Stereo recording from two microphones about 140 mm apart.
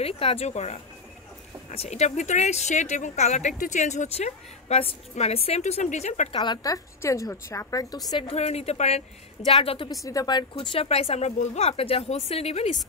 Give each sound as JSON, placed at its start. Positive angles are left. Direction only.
{"t": 0.0, "sound": "speech", "side_deg": 45}
{"t": 6.4, "sound": "a woman's voice", "side_deg": 30}
{"t": 8.1, "sound": "a woman's voice", "side_deg": 40}
{"t": 9.8, "sound": "a woman's voice", "side_deg": 25}
{"t": 10.6, "sound": "speech", "side_deg": 40}